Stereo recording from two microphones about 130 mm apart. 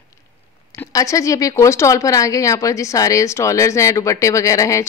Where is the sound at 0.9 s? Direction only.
25° left (ahead or behind).